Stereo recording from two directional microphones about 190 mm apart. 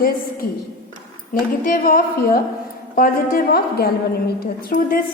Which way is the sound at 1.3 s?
45° left (ahead or behind).